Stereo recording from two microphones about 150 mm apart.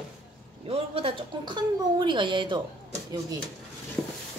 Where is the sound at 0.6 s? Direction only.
40° right (ahead or behind).